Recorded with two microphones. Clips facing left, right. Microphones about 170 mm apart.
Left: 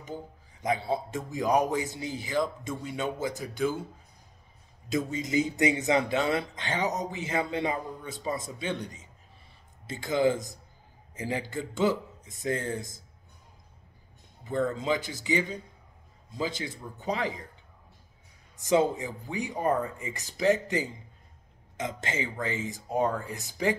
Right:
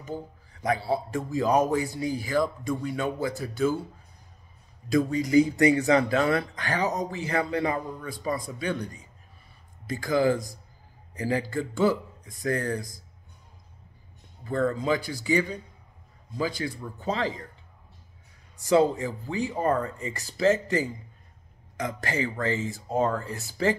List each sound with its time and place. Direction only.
0.5 s speech: 20° left (ahead or behind)
4.8 s speech: 20° left (ahead or behind)
14.4 s speech: 20° left (ahead or behind)
18.6 s speech: 20° left (ahead or behind)